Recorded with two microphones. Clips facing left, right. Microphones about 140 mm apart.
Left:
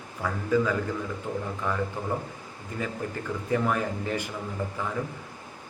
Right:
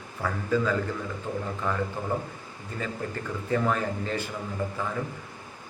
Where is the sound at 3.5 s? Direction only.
15° left (ahead or behind).